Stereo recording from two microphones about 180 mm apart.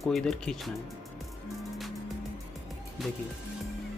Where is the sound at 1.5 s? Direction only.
Centre (ahead or behind).